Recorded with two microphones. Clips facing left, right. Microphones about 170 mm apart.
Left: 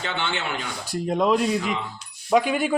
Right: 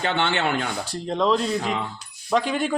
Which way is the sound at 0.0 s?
60° right (ahead or behind).